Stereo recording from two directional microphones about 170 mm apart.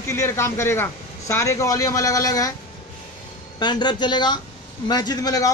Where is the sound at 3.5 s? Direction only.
25° left (ahead or behind).